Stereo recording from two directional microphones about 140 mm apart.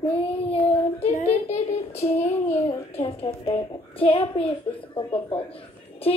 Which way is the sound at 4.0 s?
40° left (ahead or behind).